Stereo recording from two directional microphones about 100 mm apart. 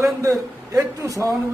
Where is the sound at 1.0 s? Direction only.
35° right (ahead or behind).